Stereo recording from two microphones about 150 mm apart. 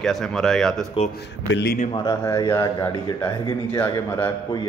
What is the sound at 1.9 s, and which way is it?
A man's voice, 30° left (ahead or behind).